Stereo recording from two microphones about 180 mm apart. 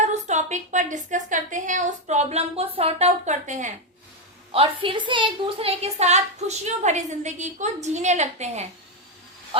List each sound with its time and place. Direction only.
0.0 s a woman's voice: 40° right (ahead or behind)
4.5 s a woman's voice: 30° right (ahead or behind)